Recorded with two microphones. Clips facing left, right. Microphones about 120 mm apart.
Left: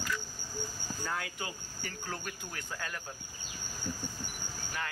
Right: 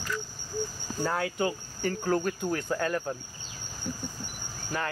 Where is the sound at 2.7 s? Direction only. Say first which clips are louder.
Right 9 dB; 55° right (ahead or behind).